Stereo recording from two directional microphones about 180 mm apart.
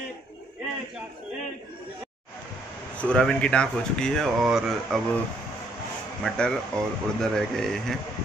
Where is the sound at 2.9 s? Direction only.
5° left (ahead or behind).